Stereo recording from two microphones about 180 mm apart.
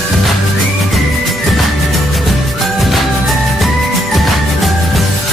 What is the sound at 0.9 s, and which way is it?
Music, centre (ahead or behind).